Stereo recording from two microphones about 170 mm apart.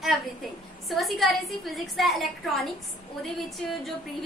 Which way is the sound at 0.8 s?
Centre (ahead or behind).